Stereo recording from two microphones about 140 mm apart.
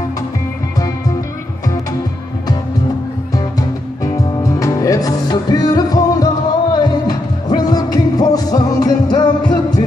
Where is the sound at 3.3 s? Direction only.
25° left (ahead or behind).